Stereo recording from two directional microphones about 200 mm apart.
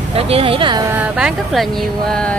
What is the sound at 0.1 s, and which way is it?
Speech, 30° right (ahead or behind).